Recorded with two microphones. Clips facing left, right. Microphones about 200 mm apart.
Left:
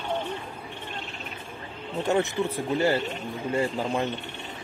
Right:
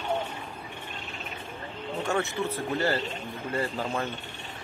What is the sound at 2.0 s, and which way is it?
Speech, 15° left (ahead or behind).